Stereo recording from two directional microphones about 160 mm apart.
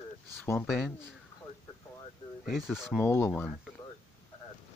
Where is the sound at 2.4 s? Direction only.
Centre (ahead or behind).